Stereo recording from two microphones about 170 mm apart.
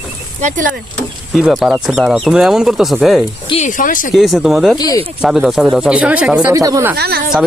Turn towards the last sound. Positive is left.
turn(degrees=-60)  # may be behind; listen again after turning